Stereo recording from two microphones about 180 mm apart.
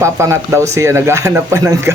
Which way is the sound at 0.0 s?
15° right (ahead or behind).